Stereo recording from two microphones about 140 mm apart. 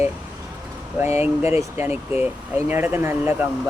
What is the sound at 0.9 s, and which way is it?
Speech, 15° right (ahead or behind).